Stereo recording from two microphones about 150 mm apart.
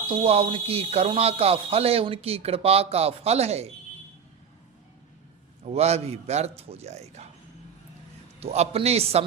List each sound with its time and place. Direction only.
0.3 s a man's voice: 40° right (ahead or behind)
5.6 s a man's voice: 45° right (ahead or behind)
8.4 s a man's voice: 45° right (ahead or behind)